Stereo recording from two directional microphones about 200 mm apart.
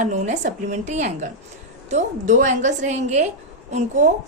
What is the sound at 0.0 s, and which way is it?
A woman's voice, 40° right (ahead or behind).